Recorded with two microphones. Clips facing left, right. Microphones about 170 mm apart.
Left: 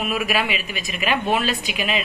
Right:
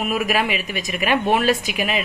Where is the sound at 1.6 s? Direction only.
20° left (ahead or behind).